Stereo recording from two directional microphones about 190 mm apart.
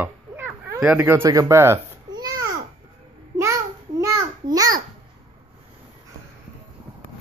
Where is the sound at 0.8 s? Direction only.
10° right (ahead or behind).